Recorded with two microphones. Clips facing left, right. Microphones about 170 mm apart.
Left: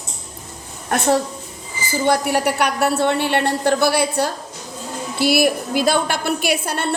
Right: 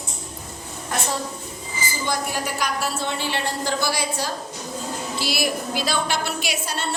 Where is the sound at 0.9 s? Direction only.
60° left (ahead or behind).